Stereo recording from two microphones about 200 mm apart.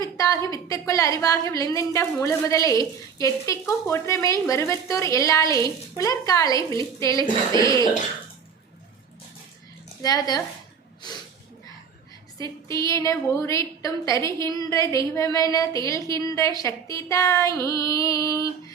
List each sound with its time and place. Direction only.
0.0 s a woman's voice: 15° left (ahead or behind)
10.0 s a woman's voice: 20° left (ahead or behind)
12.4 s a woman's voice: 15° left (ahead or behind)